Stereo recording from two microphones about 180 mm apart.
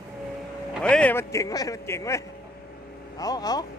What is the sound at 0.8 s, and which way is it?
Speech, 5° left (ahead or behind).